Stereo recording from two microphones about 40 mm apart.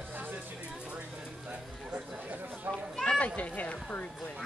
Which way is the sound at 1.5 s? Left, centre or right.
Right.